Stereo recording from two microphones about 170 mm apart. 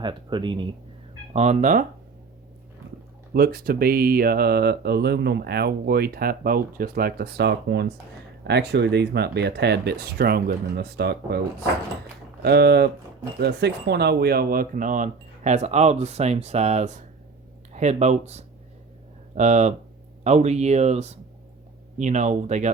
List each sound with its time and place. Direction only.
0.0 s speech: 30° right (ahead or behind)
1.3 s speech: 40° right (ahead or behind)
3.3 s speech: 65° right (ahead or behind)
12.4 s speech: 70° right (ahead or behind)
13.4 s speech: 80° right; by 22.7 s 45° right (ahead or behind)